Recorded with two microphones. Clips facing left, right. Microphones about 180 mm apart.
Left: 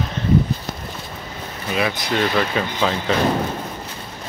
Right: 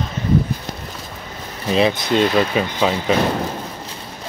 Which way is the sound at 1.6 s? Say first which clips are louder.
Right 6 dB; 25° right (ahead or behind).